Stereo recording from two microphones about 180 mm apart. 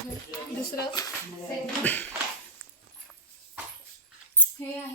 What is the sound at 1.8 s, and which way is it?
Speech, 10° left (ahead or behind).